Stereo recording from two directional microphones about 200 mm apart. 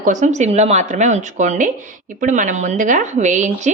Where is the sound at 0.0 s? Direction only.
40° right (ahead or behind).